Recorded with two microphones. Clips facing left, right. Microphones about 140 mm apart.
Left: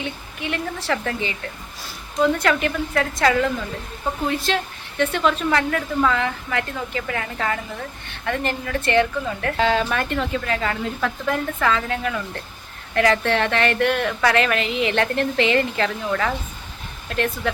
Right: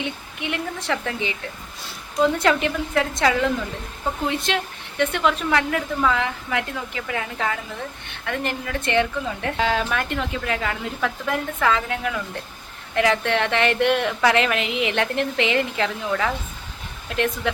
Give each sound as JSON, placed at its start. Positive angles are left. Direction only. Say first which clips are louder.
{"t": 0.0, "sound": "a woman's voice", "louder": "even", "side_deg": -20}